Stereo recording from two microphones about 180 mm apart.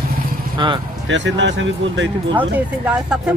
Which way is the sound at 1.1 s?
85° right.